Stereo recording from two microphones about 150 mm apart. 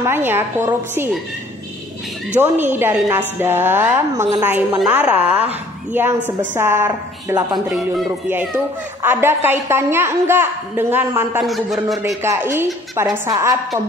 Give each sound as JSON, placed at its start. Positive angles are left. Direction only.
{"t": 0.0, "sound": "a woman's voice", "side_deg": -15}
{"t": 2.4, "sound": "a woman's voice", "side_deg": -15}
{"t": 9.0, "sound": "a woman's voice", "side_deg": -15}
{"t": 11.4, "sound": "a man's voice", "side_deg": 0}
{"t": 12.2, "sound": "a woman's voice", "side_deg": -15}